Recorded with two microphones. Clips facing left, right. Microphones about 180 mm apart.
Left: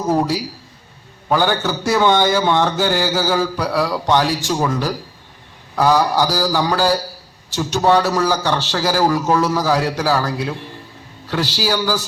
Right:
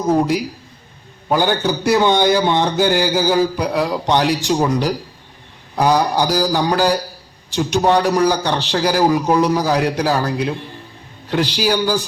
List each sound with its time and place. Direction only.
1.3 s a man's voice: 15° right (ahead or behind)